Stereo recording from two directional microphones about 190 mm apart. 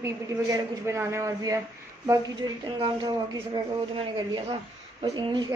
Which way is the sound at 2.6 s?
20° right (ahead or behind).